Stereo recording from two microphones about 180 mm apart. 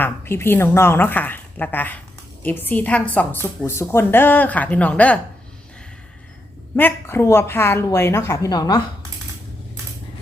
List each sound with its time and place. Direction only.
0.0 s speech: 15° left (ahead or behind)
6.7 s a woman's voice: 10° left (ahead or behind)